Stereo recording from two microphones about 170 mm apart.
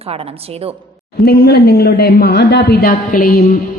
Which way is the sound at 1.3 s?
65° left (ahead or behind).